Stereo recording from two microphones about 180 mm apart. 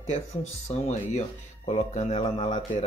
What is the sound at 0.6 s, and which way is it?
Speech, 40° left (ahead or behind).